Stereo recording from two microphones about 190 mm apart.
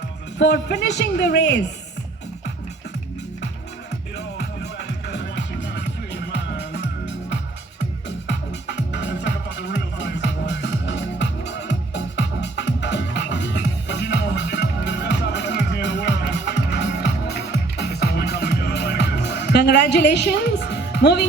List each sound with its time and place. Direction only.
0.3 s speech: 65° left (ahead or behind)
5.0 s music: 65° left (ahead or behind)